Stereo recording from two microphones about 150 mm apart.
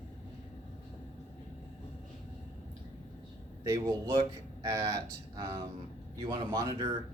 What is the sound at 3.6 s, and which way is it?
A man's voice, 20° right (ahead or behind).